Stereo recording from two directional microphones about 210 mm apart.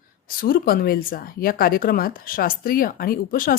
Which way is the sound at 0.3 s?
45° left (ahead or behind).